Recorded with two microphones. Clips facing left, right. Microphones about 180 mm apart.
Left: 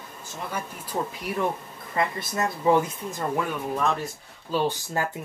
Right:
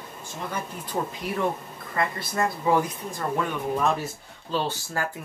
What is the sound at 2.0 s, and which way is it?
Speech, 20° left (ahead or behind).